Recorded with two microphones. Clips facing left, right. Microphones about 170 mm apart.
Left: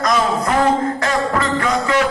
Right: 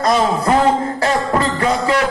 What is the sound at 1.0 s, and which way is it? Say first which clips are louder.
Music: right 4 dB; 30° right (ahead or behind).